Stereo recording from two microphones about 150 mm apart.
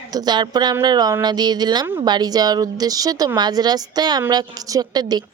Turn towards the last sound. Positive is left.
turn(degrees=-25)  # may be behind; listen again after turning